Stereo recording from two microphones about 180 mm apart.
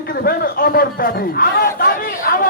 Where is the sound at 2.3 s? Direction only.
55° left (ahead or behind).